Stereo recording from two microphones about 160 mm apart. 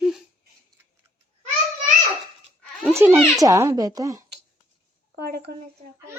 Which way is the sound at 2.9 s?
15° right (ahead or behind).